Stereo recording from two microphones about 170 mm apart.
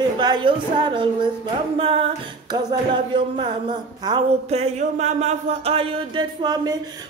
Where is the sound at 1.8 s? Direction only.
35° right (ahead or behind).